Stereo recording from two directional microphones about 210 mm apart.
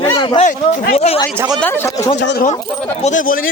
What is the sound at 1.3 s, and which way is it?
Speech, 15° right (ahead or behind).